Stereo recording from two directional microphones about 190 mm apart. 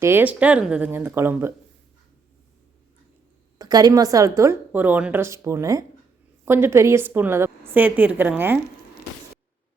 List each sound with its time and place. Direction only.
0.0 s a woman's voice: 10° right (ahead or behind)
3.6 s a woman's voice: 20° right (ahead or behind)